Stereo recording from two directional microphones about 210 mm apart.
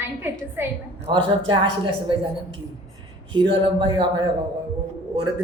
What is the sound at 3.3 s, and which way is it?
A man's voice, 25° right (ahead or behind).